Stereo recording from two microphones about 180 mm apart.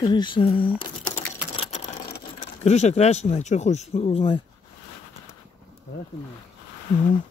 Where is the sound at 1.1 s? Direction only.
40° left (ahead or behind).